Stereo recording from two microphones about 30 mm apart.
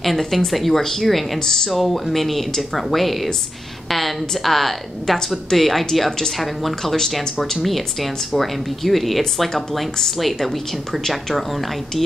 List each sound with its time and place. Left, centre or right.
0.0 s a woman's voice: centre
1.4 s speech: centre
1.7 s a woman's voice: centre